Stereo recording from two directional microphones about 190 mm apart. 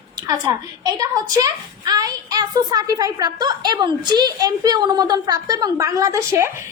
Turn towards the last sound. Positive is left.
turn(degrees=-15)  # may be behind; listen again after turning